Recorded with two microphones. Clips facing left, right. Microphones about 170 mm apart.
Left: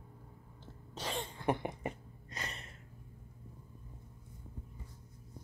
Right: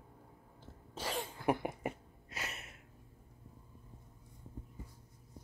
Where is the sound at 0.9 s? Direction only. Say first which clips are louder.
Even; 5° right (ahead or behind).